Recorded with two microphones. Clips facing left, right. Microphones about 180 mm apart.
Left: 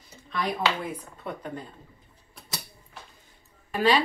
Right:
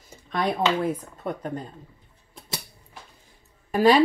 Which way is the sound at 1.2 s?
40° right (ahead or behind).